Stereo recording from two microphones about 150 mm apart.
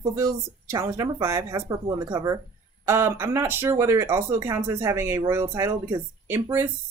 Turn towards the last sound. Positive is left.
turn(degrees=-15)  # may be behind; listen again after turning